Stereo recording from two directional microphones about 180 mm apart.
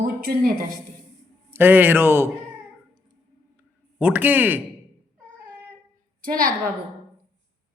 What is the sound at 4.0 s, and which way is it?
Speech, 10° right (ahead or behind).